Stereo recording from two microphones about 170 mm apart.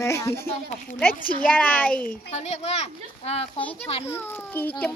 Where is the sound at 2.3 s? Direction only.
40° left (ahead or behind).